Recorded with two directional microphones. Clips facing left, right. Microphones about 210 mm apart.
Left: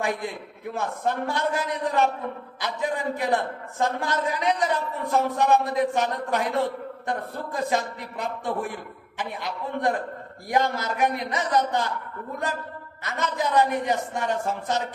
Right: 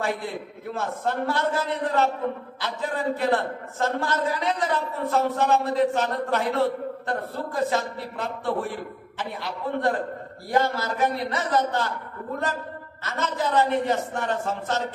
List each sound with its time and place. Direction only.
0.7 s a man's voice: 15° left (ahead or behind)
13.0 s a man's voice: 15° left (ahead or behind)